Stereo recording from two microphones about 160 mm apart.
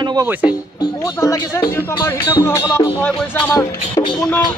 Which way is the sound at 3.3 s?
30° left (ahead or behind).